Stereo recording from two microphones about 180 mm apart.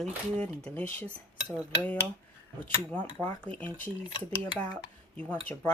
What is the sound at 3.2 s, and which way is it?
Speech, 10° left (ahead or behind).